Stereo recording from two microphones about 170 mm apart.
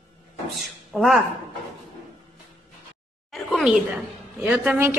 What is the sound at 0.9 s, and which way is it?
Speech, centre (ahead or behind).